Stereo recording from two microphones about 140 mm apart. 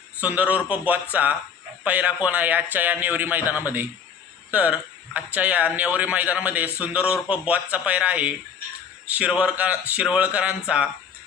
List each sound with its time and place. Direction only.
0.2 s speech: 10° right (ahead or behind)